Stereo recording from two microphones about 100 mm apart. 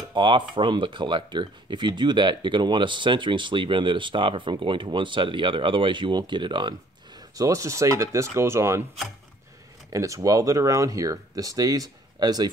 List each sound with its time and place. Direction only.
0.1 s speech: 55° right (ahead or behind)
7.2 s speech: 35° right (ahead or behind)
9.8 s speech: 30° right (ahead or behind)